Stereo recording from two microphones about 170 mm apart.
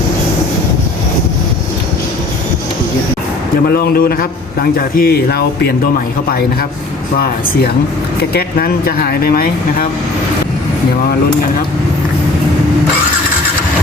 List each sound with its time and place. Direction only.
3.7 s a man's voice: 60° left (ahead or behind)
8.2 s a man's voice: 65° left (ahead or behind)